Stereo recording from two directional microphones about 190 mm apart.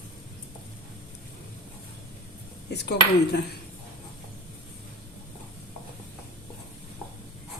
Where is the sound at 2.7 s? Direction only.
60° left (ahead or behind).